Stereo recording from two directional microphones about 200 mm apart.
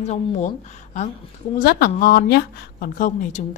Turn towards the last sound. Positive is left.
turn(degrees=40)  # may be behind; listen again after turning